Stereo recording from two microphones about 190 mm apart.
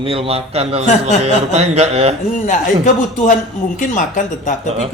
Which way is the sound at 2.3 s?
40° left (ahead or behind).